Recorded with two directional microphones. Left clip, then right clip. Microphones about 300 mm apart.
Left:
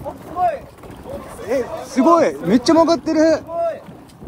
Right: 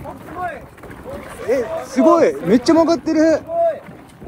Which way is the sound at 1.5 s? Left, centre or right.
Centre.